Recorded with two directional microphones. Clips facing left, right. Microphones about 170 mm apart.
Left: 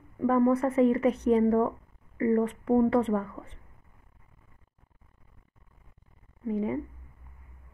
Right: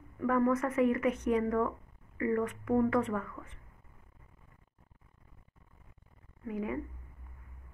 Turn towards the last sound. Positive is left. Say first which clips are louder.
# left 6 dB
turn(degrees=30)  # may be behind; listen again after turning